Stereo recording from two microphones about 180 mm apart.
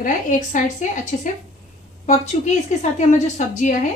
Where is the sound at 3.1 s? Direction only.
45° left (ahead or behind).